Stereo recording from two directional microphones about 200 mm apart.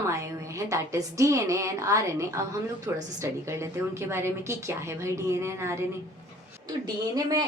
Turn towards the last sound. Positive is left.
turn(degrees=-20)  # may be behind; listen again after turning